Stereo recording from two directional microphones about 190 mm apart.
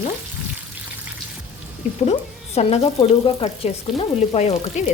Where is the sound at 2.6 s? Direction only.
35° left (ahead or behind).